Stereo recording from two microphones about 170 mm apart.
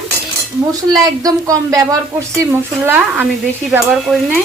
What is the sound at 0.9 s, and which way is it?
Speech, 20° right (ahead or behind).